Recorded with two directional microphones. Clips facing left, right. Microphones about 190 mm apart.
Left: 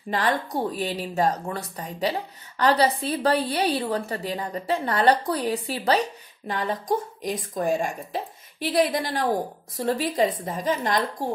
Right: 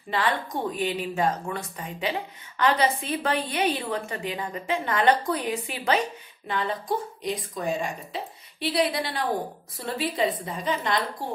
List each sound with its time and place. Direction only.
0.1 s a woman's voice: 40° left (ahead or behind)